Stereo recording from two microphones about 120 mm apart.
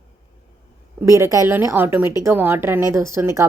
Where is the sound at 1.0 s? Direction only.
25° right (ahead or behind).